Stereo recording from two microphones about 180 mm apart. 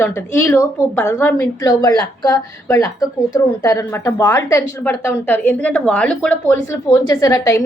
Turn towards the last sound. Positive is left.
turn(degrees=15)  # may be behind; listen again after turning